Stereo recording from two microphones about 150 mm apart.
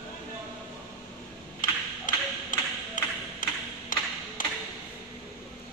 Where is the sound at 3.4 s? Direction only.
60° left (ahead or behind).